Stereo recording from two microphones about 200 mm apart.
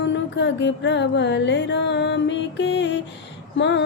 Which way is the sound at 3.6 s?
60° left (ahead or behind).